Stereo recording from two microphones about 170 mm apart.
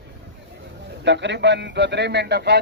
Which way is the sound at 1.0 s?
90° right.